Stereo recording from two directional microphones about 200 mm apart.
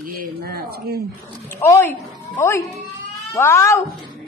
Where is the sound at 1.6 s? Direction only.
10° left (ahead or behind).